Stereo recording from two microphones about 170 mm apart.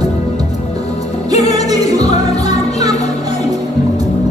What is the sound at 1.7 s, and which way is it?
Music, 20° right (ahead or behind).